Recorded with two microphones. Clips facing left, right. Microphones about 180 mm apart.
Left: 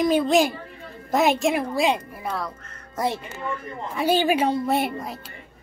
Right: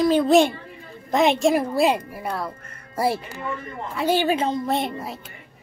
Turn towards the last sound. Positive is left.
turn(degrees=5)  # may be behind; listen again after turning